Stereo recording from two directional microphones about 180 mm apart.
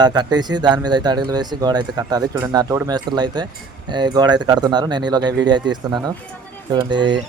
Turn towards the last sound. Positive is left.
turn(degrees=-25)  # may be behind; listen again after turning